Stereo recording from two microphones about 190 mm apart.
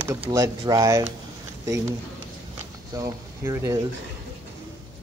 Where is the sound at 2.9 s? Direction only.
15° right (ahead or behind).